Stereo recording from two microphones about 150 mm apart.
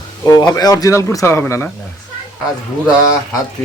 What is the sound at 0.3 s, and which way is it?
Speech, 25° left (ahead or behind).